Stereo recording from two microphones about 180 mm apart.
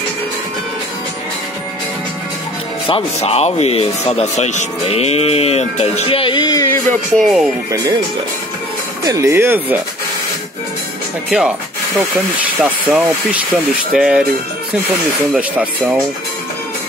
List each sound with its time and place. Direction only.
2.9 s speech: 35° left (ahead or behind); by 6.8 s 20° left (ahead or behind)
6.9 s speech: centre (ahead or behind)
9.0 s speech: 15° right (ahead or behind)
11.2 s speech: 5° right (ahead or behind)
12.6 s speech: 10° right (ahead or behind)
15.3 s speech: 10° right (ahead or behind)